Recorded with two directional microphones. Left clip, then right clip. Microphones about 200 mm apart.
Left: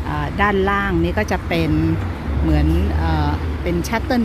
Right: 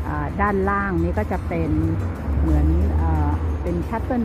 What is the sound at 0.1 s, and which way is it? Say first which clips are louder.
A woman's voice: left 4 dB; 30° left (ahead or behind).